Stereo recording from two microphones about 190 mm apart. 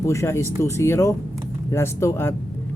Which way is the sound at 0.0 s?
15° left (ahead or behind).